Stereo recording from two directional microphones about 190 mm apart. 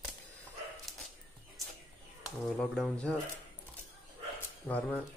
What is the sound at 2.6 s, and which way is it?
Speech, 5° left (ahead or behind).